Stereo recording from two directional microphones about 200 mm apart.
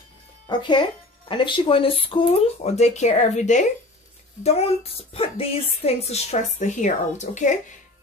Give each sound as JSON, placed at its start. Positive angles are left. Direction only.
{"t": 0.5, "sound": "a woman's voice", "side_deg": 25}